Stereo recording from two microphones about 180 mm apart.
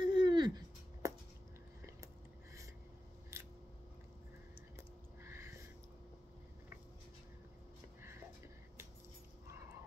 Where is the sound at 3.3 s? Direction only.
15° right (ahead or behind).